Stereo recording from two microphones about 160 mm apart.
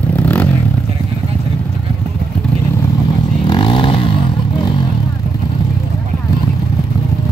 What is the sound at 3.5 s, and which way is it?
Motorcycle, 30° left (ahead or behind).